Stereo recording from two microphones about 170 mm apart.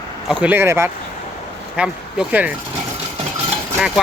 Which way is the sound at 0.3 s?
10° right (ahead or behind).